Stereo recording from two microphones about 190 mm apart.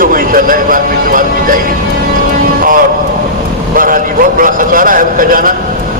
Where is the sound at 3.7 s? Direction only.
45° right (ahead or behind).